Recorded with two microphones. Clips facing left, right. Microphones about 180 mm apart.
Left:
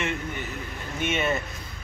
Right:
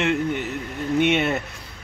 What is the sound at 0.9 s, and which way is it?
Speech, 70° right (ahead or behind).